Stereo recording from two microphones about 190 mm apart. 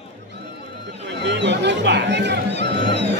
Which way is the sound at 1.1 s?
65° right (ahead or behind).